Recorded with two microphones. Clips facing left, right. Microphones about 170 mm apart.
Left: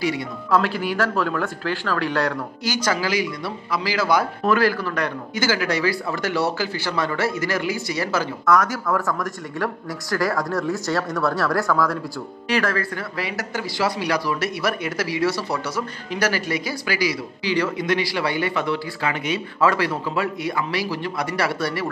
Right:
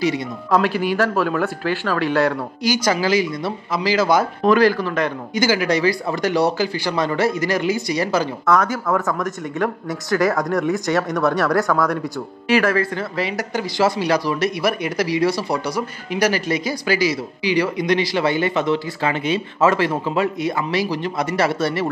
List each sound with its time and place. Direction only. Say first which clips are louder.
0.0 s speech: right 3 dB; 15° right (ahead or behind)
3.0 s speech: right 5 dB; 25° right (ahead or behind)